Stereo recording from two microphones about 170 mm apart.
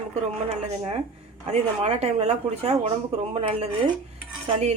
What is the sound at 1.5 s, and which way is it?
A woman's voice, 40° right (ahead or behind).